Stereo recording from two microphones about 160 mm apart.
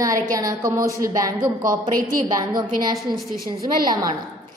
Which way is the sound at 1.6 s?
60° right (ahead or behind).